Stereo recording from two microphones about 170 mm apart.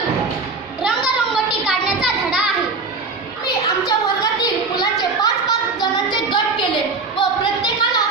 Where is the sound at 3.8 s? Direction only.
20° left (ahead or behind).